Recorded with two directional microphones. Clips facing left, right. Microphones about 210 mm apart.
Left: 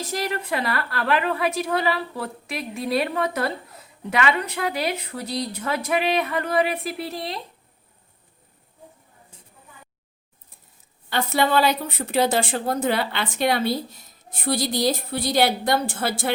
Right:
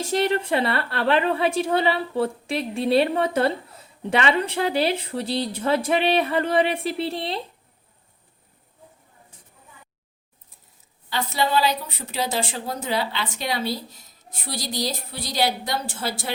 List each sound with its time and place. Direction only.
0.0 s a woman's voice: 30° right (ahead or behind)
11.1 s a woman's voice: 55° left (ahead or behind)